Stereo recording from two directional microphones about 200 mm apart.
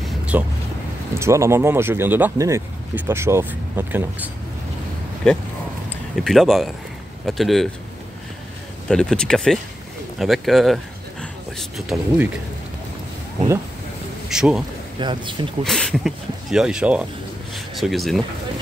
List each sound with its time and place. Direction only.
0.3 s speech: 10° right (ahead or behind)
5.9 s speech: centre (ahead or behind)
8.8 s speech: 5° left (ahead or behind)
14.3 s speech: 5° right (ahead or behind)
15.0 s speech: 25° right (ahead or behind)
15.6 s speech: 5° left (ahead or behind)